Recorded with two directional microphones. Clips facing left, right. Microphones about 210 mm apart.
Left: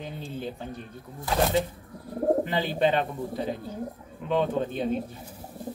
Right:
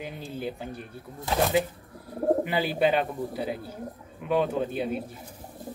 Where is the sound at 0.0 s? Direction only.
10° right (ahead or behind).